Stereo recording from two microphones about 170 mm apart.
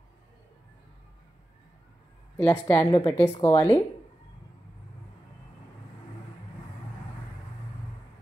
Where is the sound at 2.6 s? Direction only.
20° left (ahead or behind).